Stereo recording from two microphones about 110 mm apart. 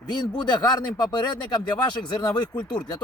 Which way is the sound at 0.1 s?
40° left (ahead or behind).